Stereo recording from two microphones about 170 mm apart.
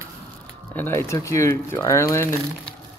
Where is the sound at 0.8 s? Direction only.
15° left (ahead or behind).